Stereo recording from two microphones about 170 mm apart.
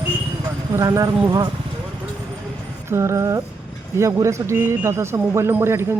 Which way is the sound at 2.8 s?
15° right (ahead or behind).